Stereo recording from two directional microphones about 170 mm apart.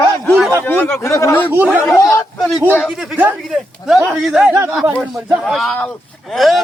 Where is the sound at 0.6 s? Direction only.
10° left (ahead or behind).